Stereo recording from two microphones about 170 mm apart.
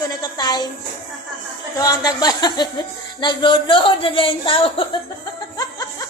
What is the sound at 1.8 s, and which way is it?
Speech, 20° left (ahead or behind).